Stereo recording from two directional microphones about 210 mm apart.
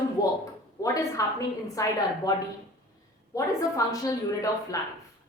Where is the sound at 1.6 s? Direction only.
15° left (ahead or behind).